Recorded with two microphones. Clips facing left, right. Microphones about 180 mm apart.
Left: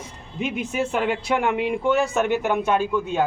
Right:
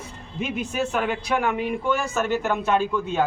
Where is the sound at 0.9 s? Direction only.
20° left (ahead or behind).